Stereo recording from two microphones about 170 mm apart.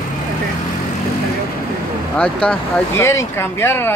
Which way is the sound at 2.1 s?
5° left (ahead or behind).